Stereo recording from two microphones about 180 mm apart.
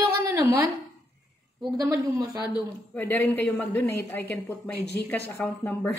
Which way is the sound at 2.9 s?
10° left (ahead or behind).